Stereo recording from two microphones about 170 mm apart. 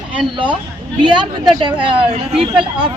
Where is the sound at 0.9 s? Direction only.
25° right (ahead or behind).